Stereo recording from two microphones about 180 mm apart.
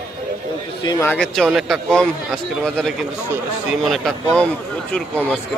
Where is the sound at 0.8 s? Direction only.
20° left (ahead or behind).